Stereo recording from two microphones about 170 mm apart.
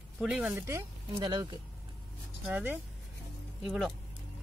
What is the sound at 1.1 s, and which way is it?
Speech, 25° right (ahead or behind).